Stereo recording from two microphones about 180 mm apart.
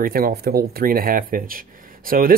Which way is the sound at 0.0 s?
55° right (ahead or behind).